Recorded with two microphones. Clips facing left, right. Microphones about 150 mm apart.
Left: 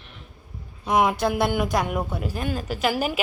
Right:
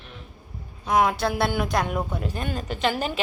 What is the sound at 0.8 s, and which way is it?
Speech, 10° left (ahead or behind).